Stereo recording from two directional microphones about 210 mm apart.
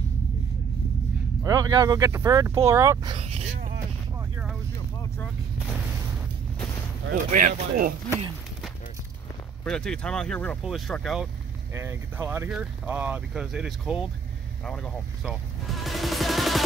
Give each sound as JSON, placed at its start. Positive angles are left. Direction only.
{"t": 1.4, "sound": "speech", "side_deg": -20}
{"t": 3.5, "sound": "a sound", "side_deg": -40}
{"t": 7.2, "sound": "speech", "side_deg": -40}
{"t": 9.7, "sound": "speech", "side_deg": 5}
{"t": 11.7, "sound": "speech", "side_deg": -10}
{"t": 14.6, "sound": "music", "side_deg": 5}